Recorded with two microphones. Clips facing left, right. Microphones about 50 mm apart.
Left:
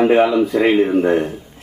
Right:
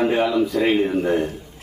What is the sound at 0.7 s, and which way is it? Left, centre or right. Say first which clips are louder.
Speech: left 5 dB; left.